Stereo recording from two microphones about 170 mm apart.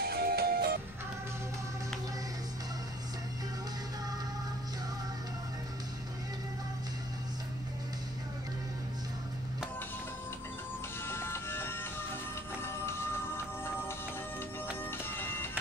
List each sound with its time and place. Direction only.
0.0 s music: 65° right (ahead or behind)
11.1 s music: 15° left (ahead or behind)